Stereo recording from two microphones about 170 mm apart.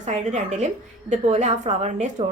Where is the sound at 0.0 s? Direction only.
45° right (ahead or behind).